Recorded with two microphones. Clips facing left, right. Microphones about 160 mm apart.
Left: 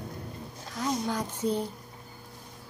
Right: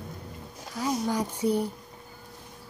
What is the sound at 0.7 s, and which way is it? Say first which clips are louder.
Speech: right 2 dB; 5° right (ahead or behind).